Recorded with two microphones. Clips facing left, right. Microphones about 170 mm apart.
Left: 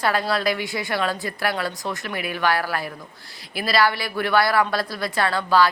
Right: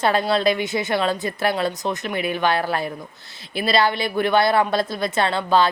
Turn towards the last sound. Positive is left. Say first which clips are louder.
# right 1 dB
turn(degrees=-25)  # may be behind; listen again after turning